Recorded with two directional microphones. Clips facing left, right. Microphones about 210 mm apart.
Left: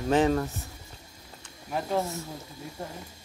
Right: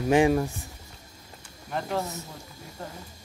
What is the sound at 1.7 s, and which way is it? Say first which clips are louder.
Speech: left 1 dB; 5° left (ahead or behind).